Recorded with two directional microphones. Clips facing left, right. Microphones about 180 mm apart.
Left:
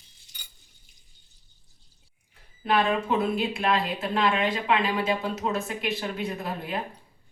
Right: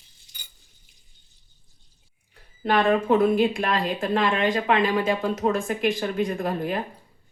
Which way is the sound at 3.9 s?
45° right (ahead or behind).